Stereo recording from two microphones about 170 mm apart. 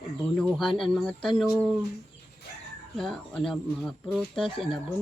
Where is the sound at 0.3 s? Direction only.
Centre (ahead or behind).